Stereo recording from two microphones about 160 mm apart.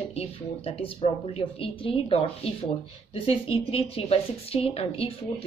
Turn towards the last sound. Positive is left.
turn(degrees=40)  # may be behind; listen again after turning